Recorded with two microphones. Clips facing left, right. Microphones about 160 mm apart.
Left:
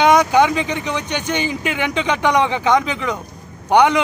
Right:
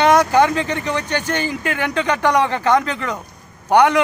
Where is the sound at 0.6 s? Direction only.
10° left (ahead or behind).